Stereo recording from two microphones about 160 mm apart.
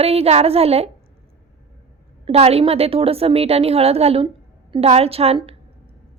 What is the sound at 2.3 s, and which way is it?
A woman's voice, 40° right (ahead or behind).